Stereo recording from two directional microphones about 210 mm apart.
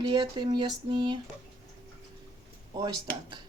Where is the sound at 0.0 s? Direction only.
20° right (ahead or behind).